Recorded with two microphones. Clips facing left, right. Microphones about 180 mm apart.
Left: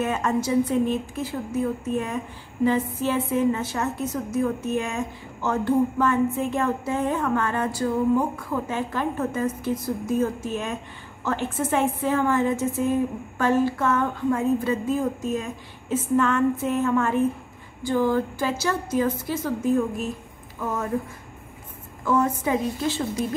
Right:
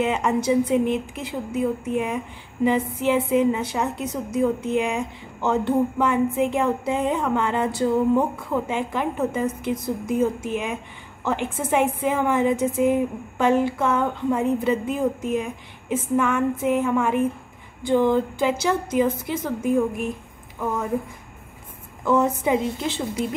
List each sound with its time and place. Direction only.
0.0 s a woman's voice: 15° right (ahead or behind)
22.0 s a woman's voice: 20° right (ahead or behind)